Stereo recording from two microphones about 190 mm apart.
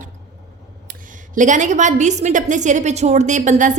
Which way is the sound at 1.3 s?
40° right (ahead or behind).